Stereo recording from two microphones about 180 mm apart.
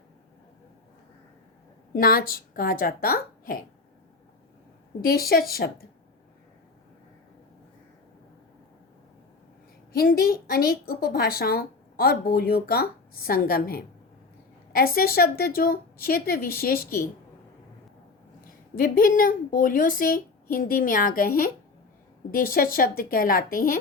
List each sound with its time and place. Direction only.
1.9 s a woman's voice: 55° left (ahead or behind)
5.0 s a woman's voice: 55° left (ahead or behind)
9.9 s a woman's voice: 55° left (ahead or behind)
18.8 s a woman's voice: 50° left (ahead or behind)